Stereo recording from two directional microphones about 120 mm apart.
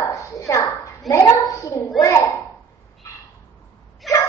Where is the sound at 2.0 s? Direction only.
25° left (ahead or behind).